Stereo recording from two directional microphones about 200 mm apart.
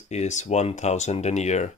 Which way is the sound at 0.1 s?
35° left (ahead or behind).